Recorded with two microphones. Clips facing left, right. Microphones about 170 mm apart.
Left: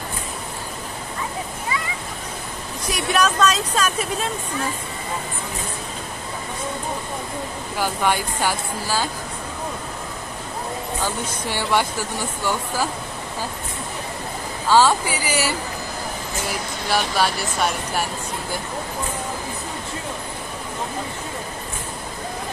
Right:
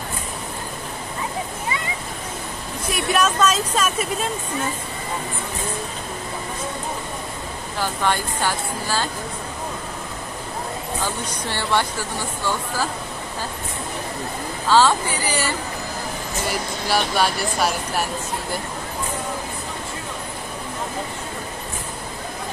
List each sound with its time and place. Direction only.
2.9 s speech: centre (ahead or behind)
7.8 s speech: 10° left (ahead or behind)
11.4 s speech: 10° left (ahead or behind)
14.7 s speech: 10° left (ahead or behind)